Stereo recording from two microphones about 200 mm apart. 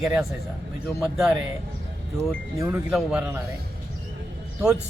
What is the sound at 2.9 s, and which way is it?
Speech, 5° right (ahead or behind).